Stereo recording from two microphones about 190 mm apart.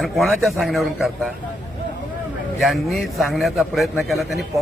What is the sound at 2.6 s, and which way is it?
A man's voice, centre (ahead or behind).